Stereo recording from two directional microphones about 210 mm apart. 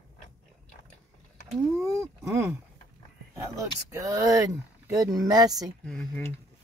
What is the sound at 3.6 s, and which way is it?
Speech, 15° right (ahead or behind).